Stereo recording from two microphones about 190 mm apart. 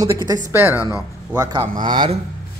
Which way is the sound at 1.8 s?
25° right (ahead or behind).